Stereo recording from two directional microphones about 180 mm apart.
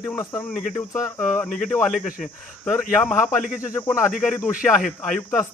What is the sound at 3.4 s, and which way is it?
Speech, 50° left (ahead or behind).